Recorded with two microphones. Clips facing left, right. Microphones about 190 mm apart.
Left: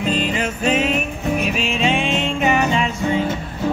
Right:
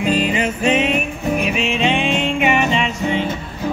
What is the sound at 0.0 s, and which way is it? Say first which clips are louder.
Music: right 3 dB; 5° right (ahead or behind).